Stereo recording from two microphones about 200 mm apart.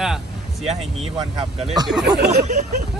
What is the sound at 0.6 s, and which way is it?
Speech, 30° right (ahead or behind).